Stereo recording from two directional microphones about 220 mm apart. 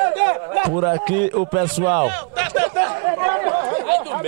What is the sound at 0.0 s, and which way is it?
Speech, 15° right (ahead or behind).